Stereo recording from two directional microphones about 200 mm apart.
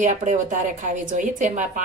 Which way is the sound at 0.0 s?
40° right (ahead or behind).